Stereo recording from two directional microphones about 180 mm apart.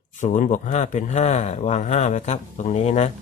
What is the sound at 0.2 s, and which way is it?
Speech, 45° left (ahead or behind).